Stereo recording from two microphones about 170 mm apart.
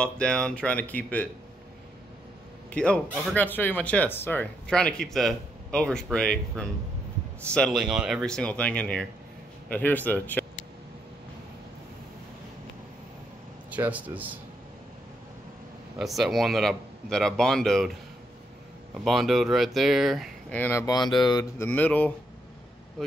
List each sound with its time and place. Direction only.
0.0 s speech: 5° left (ahead or behind)
2.7 s speech: 5° left (ahead or behind)
13.7 s speech: 10° right (ahead or behind)
16.0 s speech: centre (ahead or behind)
19.0 s speech: centre (ahead or behind)
20.8 s speech: 25° left (ahead or behind)
21.6 s speech: 10° left (ahead or behind)